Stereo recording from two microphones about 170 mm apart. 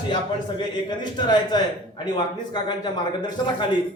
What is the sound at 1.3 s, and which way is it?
Speech, 25° left (ahead or behind).